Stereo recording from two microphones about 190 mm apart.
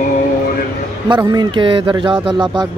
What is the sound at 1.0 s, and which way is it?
A man's voice, 25° right (ahead or behind).